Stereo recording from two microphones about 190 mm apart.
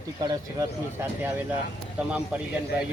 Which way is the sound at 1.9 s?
5° right (ahead or behind).